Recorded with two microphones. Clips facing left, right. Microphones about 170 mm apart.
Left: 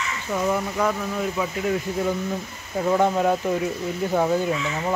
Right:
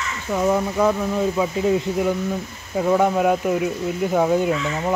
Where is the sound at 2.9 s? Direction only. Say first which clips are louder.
Right 2 dB; 10° right (ahead or behind).